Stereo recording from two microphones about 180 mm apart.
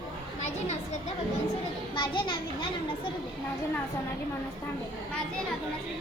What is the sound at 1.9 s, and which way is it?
Speech, 25° left (ahead or behind).